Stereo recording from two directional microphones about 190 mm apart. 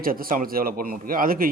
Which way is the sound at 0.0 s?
50° right (ahead or behind).